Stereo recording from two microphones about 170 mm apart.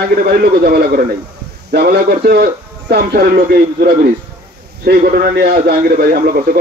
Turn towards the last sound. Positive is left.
turn(degrees=-60)  # may be behind; listen again after turning